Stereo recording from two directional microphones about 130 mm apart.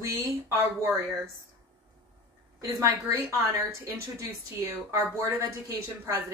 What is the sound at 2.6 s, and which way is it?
A woman's voice, 25° right (ahead or behind).